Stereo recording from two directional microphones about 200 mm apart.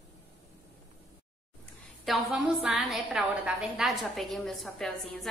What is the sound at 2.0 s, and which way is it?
A woman's voice, 5° right (ahead or behind).